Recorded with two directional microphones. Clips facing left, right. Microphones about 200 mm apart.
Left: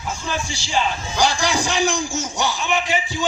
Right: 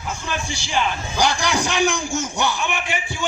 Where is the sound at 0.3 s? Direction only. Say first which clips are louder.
Left 1 dB; 55° right (ahead or behind).